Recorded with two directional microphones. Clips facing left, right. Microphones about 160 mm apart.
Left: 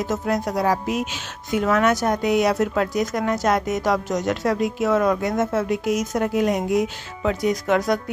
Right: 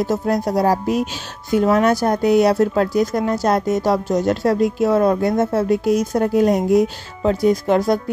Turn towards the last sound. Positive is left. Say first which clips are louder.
# right 4 dB
turn(degrees=-30)  # may be behind; listen again after turning